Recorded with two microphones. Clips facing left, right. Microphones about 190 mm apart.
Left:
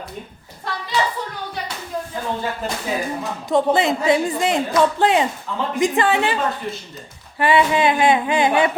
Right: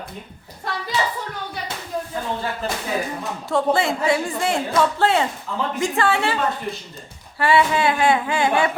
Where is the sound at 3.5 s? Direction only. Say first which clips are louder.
Left 3 dB; 20° left (ahead or behind).